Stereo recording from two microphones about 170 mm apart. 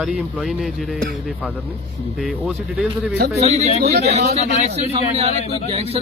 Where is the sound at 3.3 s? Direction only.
40° right (ahead or behind).